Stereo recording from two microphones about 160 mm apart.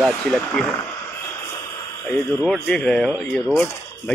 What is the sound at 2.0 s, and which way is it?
Speech, 15° left (ahead or behind).